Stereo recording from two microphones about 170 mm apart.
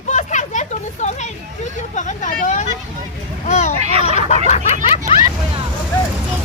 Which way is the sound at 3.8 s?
35° right (ahead or behind).